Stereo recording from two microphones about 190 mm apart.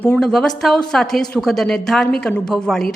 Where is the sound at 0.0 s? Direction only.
5° left (ahead or behind).